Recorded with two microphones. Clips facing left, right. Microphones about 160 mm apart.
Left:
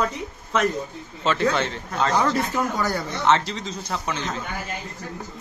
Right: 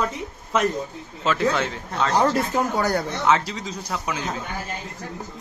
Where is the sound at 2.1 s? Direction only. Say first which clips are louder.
Right 3 dB; 40° right (ahead or behind).